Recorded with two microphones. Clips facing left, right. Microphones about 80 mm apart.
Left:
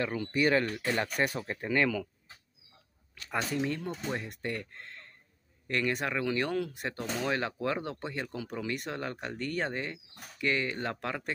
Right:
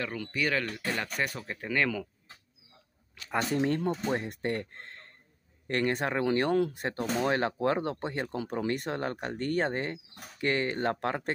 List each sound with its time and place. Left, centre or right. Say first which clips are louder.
0.0 s speech: left 3 dB; centre
3.5 s speech: right 5 dB; right